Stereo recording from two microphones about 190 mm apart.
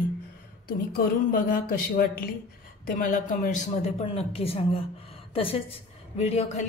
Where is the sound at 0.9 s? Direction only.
50° left (ahead or behind).